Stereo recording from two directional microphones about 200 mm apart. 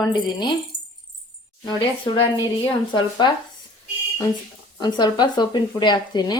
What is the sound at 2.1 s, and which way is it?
Speech, 25° left (ahead or behind).